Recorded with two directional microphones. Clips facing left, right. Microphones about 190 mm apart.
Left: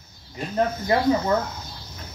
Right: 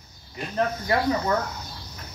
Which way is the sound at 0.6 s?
25° left (ahead or behind).